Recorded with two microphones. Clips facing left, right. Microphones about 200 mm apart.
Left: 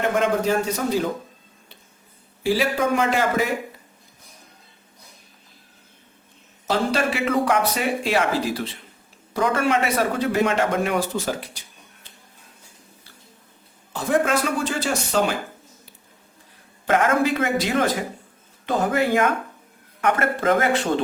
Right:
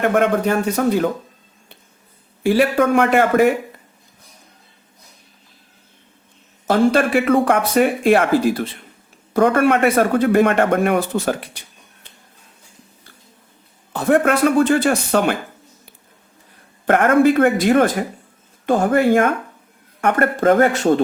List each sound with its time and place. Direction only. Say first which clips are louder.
0.0 s speech: right 4 dB; 60° right (ahead or behind)
2.4 s speech: right 6 dB; 55° right (ahead or behind)
6.7 s speech: right 7 dB; 50° right (ahead or behind)
13.9 s speech: right 5 dB; 60° right (ahead or behind)
16.8 s speech: right 6 dB; 55° right (ahead or behind)